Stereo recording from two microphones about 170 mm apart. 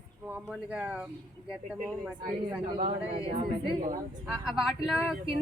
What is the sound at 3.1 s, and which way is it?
Speech, 30° right (ahead or behind).